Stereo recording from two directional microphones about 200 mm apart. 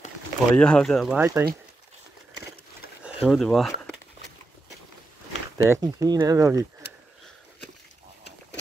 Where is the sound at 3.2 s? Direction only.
Centre (ahead or behind).